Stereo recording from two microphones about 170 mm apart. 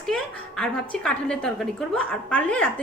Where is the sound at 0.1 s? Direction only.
5° left (ahead or behind).